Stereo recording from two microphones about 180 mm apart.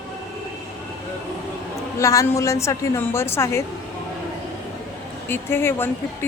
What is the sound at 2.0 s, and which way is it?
A woman's voice, 15° left (ahead or behind).